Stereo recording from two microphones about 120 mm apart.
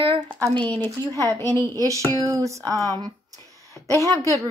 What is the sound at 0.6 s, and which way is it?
Speech, 10° left (ahead or behind).